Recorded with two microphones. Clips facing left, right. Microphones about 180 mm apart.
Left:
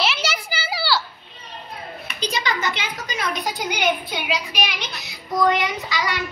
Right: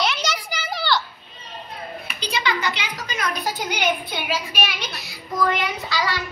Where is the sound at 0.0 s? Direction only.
5° left (ahead or behind).